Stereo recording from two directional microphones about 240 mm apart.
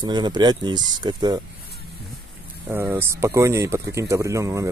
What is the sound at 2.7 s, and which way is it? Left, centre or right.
Speech, centre.